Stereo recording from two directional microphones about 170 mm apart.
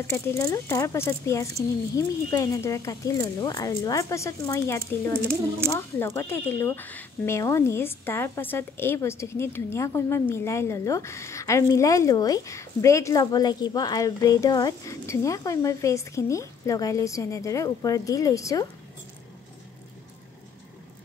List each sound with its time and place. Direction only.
0.0 s a woman's voice: 15° left (ahead or behind)